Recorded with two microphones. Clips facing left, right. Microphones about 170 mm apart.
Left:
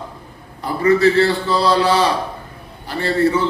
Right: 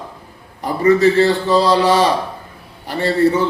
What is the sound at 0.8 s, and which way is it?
A man's voice, 15° right (ahead or behind).